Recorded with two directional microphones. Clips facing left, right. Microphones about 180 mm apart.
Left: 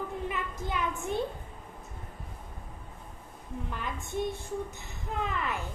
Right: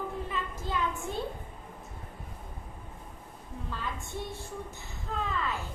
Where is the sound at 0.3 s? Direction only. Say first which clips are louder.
Left 1 dB; 15° left (ahead or behind).